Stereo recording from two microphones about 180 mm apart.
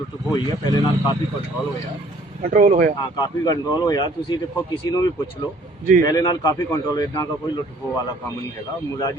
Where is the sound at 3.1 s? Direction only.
20° left (ahead or behind).